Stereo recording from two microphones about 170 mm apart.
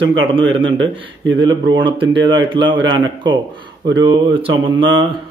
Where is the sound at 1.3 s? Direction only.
25° right (ahead or behind).